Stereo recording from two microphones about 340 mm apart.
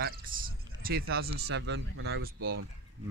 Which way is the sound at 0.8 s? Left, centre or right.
Right.